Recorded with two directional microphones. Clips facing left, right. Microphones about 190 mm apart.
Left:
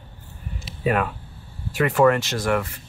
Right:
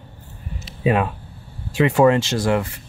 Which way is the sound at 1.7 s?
25° right (ahead or behind).